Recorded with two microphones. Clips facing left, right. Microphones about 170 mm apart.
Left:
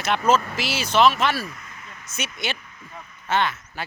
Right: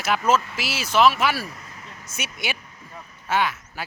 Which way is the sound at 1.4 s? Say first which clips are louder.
Even; 35° right (ahead or behind).